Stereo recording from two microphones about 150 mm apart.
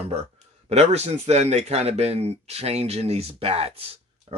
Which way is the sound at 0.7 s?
45° right (ahead or behind).